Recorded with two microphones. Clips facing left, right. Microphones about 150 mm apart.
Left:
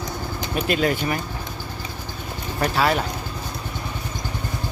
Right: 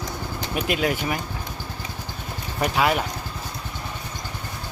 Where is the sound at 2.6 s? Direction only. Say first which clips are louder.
Left 1 dB; 10° right (ahead or behind).